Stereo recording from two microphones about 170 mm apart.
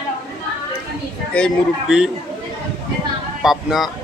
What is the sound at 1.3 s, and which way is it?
Speech, 5° left (ahead or behind).